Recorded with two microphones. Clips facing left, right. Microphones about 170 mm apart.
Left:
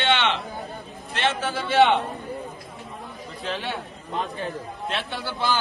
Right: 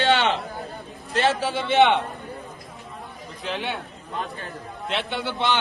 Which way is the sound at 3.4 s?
15° right (ahead or behind).